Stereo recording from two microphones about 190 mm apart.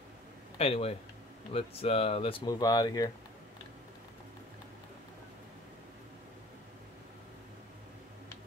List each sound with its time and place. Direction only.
0.6 s speech: 30° left (ahead or behind)